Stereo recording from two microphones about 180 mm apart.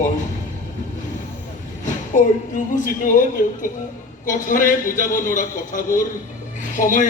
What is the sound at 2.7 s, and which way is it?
A man's voice, 45° left (ahead or behind).